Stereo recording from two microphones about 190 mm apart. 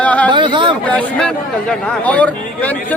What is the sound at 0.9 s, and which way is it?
Speech, 5° left (ahead or behind).